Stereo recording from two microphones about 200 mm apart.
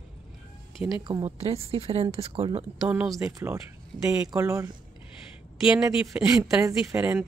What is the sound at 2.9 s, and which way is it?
Speech, 5° right (ahead or behind).